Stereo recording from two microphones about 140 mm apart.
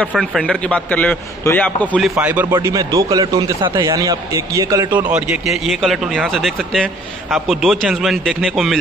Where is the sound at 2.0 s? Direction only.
5° right (ahead or behind); by 5.1 s 25° right (ahead or behind).